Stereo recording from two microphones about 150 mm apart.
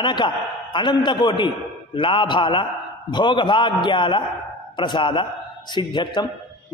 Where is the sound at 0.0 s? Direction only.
30° left (ahead or behind).